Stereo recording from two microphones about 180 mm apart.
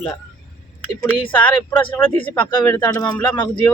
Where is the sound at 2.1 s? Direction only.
30° left (ahead or behind).